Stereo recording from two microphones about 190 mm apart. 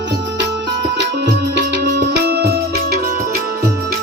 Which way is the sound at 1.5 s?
60° right (ahead or behind).